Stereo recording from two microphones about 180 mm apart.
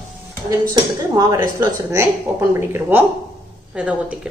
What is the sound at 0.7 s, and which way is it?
Speech, 20° right (ahead or behind).